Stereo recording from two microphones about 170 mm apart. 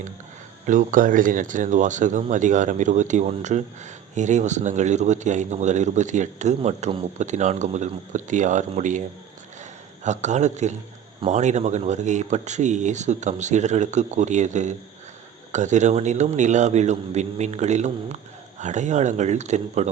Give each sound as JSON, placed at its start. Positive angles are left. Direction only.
{"t": 0.6, "sound": "speech", "side_deg": -50}